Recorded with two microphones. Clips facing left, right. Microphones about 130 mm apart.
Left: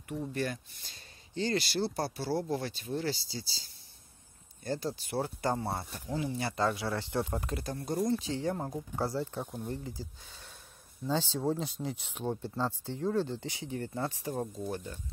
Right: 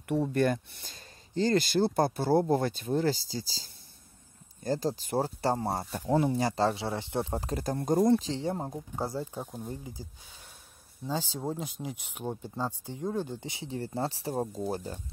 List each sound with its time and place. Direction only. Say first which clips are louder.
0.3 s speech: right 8 dB; 50° right (ahead or behind)
8.4 s speech: right 1 dB; 20° right (ahead or behind)
9.4 s speech: left 1 dB; centre (ahead or behind)
10.0 s speech: left 1 dB; 15° right (ahead or behind); by 15.0 s 35° right (ahead or behind)